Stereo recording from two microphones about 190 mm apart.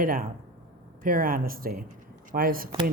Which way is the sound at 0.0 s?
45° right (ahead or behind).